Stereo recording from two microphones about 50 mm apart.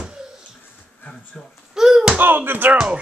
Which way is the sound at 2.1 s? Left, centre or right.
Right.